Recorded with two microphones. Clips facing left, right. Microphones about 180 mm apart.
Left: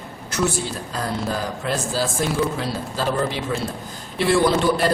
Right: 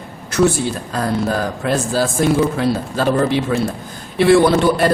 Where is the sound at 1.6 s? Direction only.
55° right (ahead or behind).